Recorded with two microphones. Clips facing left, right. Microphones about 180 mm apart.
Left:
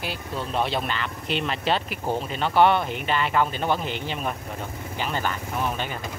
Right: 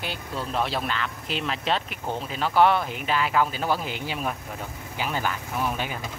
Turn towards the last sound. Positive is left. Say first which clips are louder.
# left 1 dB
turn(degrees=-5)  # may be behind; listen again after turning